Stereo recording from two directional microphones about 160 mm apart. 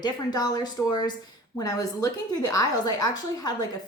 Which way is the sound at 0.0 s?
25° left (ahead or behind).